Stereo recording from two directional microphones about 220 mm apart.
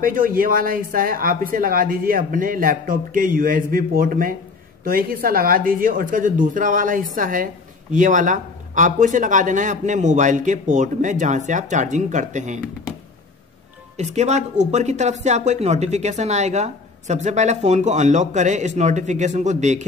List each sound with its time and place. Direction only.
0.0 s a woman's voice: 40° right (ahead or behind)
13.9 s a woman's voice: 30° right (ahead or behind)